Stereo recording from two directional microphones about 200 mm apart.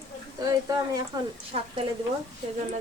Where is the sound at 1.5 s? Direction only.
30° right (ahead or behind).